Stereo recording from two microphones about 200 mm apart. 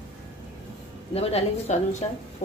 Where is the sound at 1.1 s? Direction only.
30° left (ahead or behind).